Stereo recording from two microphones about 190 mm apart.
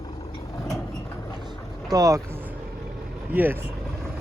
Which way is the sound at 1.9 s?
20° right (ahead or behind).